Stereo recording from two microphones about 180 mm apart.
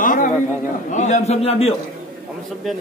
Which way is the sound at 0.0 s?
50° left (ahead or behind).